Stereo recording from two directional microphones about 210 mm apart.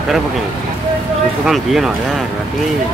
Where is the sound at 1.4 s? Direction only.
Centre (ahead or behind).